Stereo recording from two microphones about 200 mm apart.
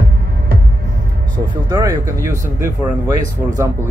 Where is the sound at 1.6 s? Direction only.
15° right (ahead or behind).